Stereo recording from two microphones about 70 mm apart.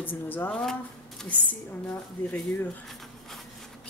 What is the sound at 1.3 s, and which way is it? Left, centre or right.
Speech, left.